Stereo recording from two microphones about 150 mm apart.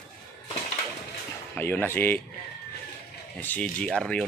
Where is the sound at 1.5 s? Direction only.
15° left (ahead or behind).